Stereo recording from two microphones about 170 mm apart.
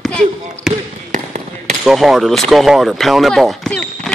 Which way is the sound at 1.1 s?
45° right (ahead or behind).